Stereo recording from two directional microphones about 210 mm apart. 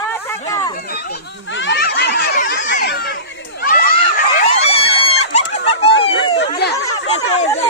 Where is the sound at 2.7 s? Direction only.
55° left (ahead or behind); by 5.4 s 30° left (ahead or behind).